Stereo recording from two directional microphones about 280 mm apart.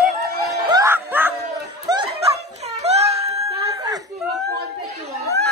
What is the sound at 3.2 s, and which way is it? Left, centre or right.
Snicker, centre.